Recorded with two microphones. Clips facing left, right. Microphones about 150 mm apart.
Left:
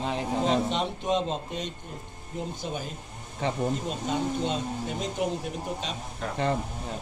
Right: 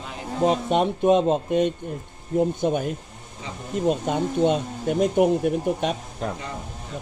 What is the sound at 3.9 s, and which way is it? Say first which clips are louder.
Speech: right 6 dB; 55° right (ahead or behind).